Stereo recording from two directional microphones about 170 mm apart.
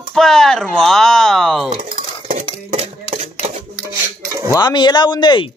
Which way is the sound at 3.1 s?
40° right (ahead or behind).